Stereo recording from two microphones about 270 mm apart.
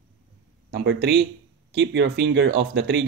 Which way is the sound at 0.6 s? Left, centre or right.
Right.